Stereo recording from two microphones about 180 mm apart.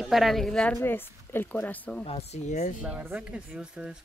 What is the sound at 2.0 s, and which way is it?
Speech, 35° left (ahead or behind).